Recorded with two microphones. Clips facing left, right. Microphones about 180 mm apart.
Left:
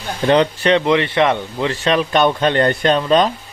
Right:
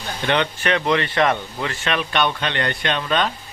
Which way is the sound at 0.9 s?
20° left (ahead or behind).